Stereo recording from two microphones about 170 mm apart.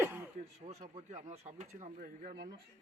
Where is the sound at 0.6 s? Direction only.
40° right (ahead or behind); by 2.6 s 60° right (ahead or behind).